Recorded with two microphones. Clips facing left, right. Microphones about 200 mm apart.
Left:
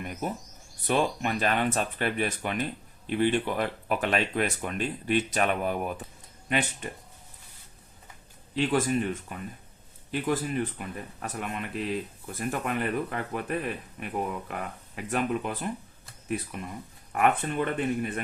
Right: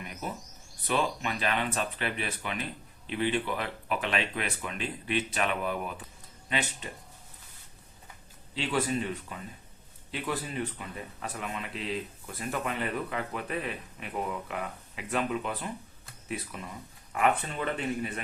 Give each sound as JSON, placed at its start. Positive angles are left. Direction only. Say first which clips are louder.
{"t": 0.0, "sound": "a sound", "louder": "left 6 dB", "side_deg": 45}
{"t": 0.9, "sound": "speech", "louder": "left 4 dB", "side_deg": 45}
{"t": 8.5, "sound": "speech", "louder": "left 4 dB", "side_deg": 50}